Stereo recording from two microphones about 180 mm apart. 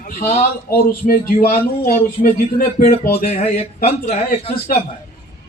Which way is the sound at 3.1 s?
35° left (ahead or behind).